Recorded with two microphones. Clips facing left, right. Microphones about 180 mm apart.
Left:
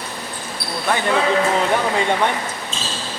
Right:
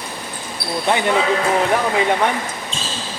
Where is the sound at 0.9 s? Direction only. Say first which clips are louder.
Right 2 dB; 20° right (ahead or behind).